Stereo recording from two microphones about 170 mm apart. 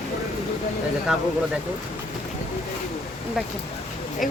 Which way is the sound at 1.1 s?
5° right (ahead or behind).